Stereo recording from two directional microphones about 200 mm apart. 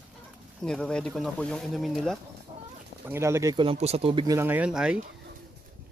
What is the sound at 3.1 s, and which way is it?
Speech, 15° right (ahead or behind).